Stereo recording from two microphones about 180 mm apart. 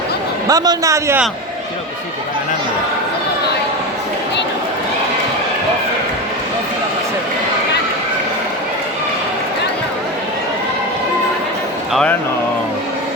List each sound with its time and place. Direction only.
0.4 s a man's voice: 20° right (ahead or behind)